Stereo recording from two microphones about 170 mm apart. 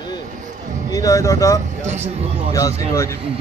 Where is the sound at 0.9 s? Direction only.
20° left (ahead or behind).